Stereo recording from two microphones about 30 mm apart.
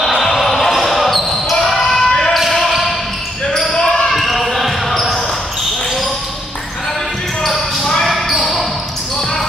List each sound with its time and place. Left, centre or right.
0.3 s basketball bounce: centre
2.0 s basketball bounce: left
2.6 s basketball bounce: centre
3.7 s basketball bounce: left
4.1 s basketball bounce: centre
7.4 s basketball bounce: centre